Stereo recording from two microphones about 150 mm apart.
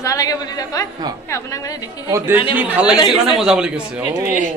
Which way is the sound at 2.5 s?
10° right (ahead or behind).